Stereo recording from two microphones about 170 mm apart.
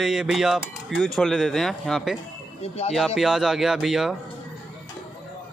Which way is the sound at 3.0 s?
Centre (ahead or behind).